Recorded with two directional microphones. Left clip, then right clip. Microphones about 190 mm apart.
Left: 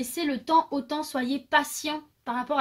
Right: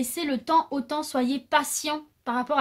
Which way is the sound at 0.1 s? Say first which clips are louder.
Even; 40° right (ahead or behind).